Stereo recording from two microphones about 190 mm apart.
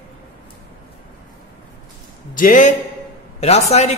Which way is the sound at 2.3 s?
45° left (ahead or behind).